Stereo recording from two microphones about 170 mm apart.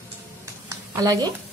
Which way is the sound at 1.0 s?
20° right (ahead or behind).